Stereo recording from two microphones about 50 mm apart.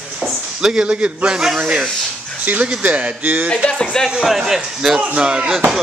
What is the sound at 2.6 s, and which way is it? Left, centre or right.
Speech, right.